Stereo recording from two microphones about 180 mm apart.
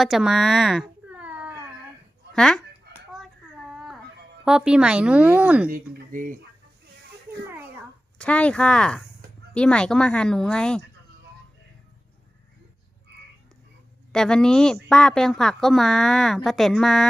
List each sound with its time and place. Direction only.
0.0 s cat: centre (ahead or behind)
2.3 s a woman's voice: 5° left (ahead or behind)
3.1 s a sound: centre (ahead or behind)
4.4 s a woman's voice: 5° right (ahead or behind)
5.6 s speech: 55° right (ahead or behind)
8.2 s a woman's voice: 5° left (ahead or behind)
14.1 s a woman's voice: 5° left (ahead or behind)